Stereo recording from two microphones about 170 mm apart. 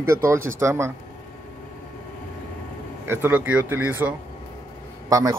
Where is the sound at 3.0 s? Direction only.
15° right (ahead or behind).